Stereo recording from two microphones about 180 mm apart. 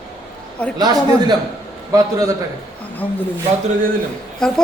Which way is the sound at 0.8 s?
20° right (ahead or behind).